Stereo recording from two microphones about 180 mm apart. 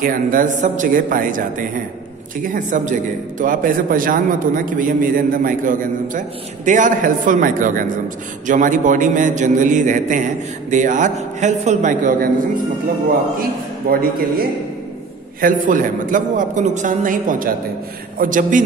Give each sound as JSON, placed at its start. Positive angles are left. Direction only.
{"t": 0.0, "sound": "a man's voice", "side_deg": -50}
{"t": 13.9, "sound": "a man's voice", "side_deg": -50}
{"t": 15.4, "sound": "a man's voice", "side_deg": -45}